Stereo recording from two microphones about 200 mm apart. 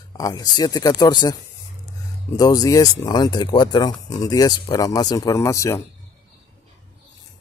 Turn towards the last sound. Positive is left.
turn(degrees=15)  # may be behind; listen again after turning